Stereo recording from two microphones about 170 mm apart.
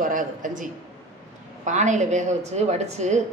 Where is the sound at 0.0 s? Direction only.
50° right (ahead or behind).